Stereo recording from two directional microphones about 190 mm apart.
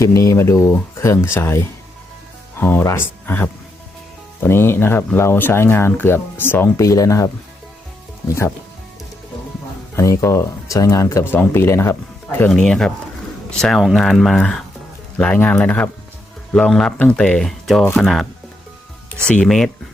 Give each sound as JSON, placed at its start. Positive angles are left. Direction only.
{"t": 0.0, "sound": "speech", "side_deg": 15}
{"t": 8.3, "sound": "speech", "side_deg": 15}
{"t": 9.9, "sound": "speech", "side_deg": 15}
{"t": 12.4, "sound": "speech", "side_deg": 5}